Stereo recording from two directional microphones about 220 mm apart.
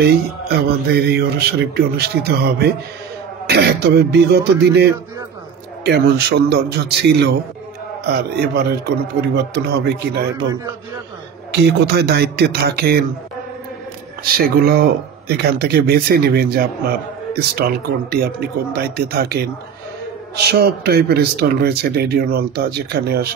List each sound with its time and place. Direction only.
0.0 s speech: 45° right (ahead or behind)
5.9 s speech: 45° right (ahead or behind)
11.5 s speech: 50° right (ahead or behind)
14.3 s speech: 45° right (ahead or behind)
20.4 s speech: 45° right (ahead or behind)